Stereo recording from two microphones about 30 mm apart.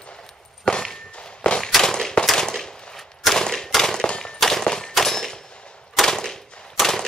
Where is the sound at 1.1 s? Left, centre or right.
Left.